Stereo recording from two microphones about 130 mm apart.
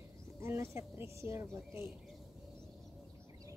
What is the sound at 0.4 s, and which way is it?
A woman's voice, 20° right (ahead or behind).